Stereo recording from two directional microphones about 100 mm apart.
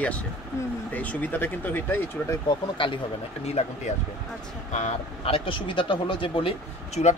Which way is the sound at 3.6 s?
90° left.